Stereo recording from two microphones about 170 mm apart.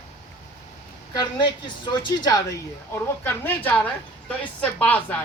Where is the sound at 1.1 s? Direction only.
25° left (ahead or behind).